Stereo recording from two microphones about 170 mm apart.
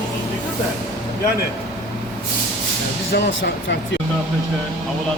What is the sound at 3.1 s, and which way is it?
Speech, 90° left.